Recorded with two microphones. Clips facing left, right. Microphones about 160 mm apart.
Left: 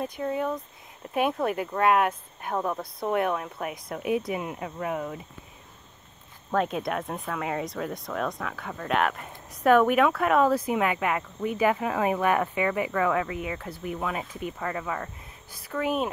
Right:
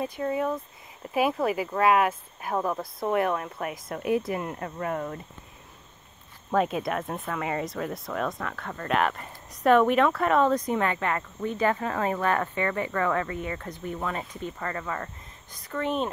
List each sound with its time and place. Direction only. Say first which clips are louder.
0.0 s speech: right 1 dB; centre (ahead or behind)
6.5 s speech: right 1 dB; centre (ahead or behind)